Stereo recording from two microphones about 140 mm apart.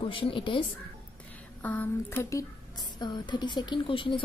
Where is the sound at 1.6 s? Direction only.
10° left (ahead or behind).